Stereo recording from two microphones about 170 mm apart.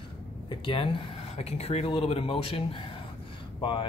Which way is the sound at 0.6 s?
30° left (ahead or behind).